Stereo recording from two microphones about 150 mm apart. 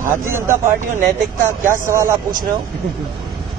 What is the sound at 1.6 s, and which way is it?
Speech, 15° right (ahead or behind).